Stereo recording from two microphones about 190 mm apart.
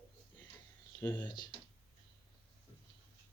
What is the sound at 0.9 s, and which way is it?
Speech, 20° left (ahead or behind).